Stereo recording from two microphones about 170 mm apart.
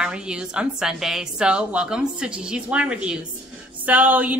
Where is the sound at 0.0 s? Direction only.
5° right (ahead or behind).